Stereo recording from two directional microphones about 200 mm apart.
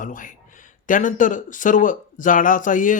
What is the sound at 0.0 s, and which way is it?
Speech, 40° left (ahead or behind).